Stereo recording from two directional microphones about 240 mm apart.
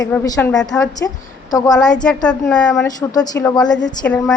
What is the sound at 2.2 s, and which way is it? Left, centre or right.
Speech, centre.